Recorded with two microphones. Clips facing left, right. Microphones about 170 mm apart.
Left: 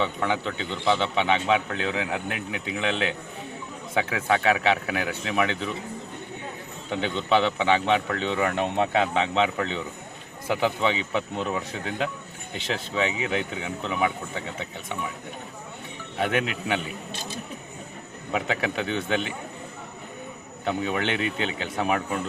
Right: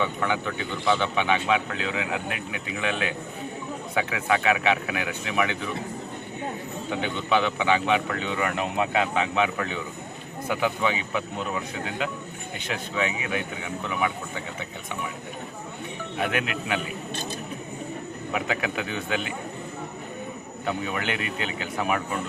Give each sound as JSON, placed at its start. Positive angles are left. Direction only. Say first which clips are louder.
{"t": 0.0, "sound": "a man's voice", "louder": "even", "side_deg": 25}
{"t": 7.0, "sound": "a man's voice", "louder": "left 2 dB", "side_deg": 30}
{"t": 16.1, "sound": "a man's voice", "louder": "left 2 dB", "side_deg": 30}
{"t": 18.3, "sound": "a man's voice", "louder": "left 2 dB", "side_deg": 30}
{"t": 20.7, "sound": "a man's voice", "louder": "left 3 dB", "side_deg": 25}